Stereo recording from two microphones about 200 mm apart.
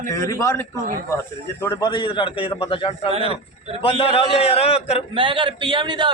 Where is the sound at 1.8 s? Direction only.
25° left (ahead or behind).